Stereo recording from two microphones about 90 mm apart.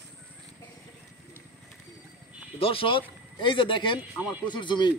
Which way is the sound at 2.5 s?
90° left.